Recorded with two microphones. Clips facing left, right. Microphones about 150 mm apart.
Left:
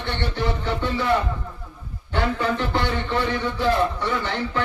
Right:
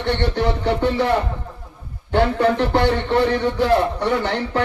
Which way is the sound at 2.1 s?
65° right (ahead or behind).